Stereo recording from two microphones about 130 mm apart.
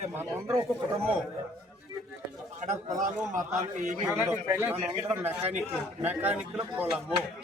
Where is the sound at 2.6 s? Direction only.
75° right (ahead or behind).